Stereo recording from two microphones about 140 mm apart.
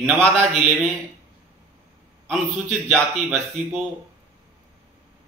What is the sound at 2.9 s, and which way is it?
Speech, centre (ahead or behind).